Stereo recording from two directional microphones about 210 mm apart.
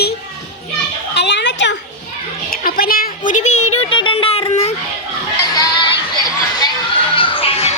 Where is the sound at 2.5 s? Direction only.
45° left (ahead or behind).